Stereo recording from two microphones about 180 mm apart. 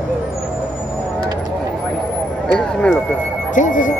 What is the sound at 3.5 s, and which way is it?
Speech, 45° left (ahead or behind).